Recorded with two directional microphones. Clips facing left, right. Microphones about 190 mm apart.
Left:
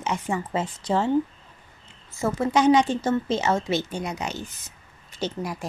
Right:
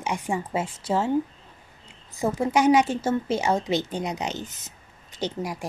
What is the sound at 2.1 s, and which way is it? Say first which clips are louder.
A woman's voice: even; 15° right (ahead or behind).